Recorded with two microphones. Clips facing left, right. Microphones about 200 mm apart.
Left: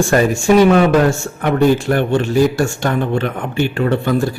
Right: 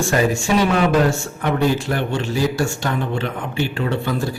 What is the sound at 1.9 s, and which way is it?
Speech, 55° left (ahead or behind).